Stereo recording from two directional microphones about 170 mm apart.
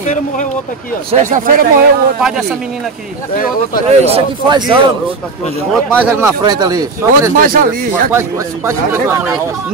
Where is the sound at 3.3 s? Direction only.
55° left (ahead or behind).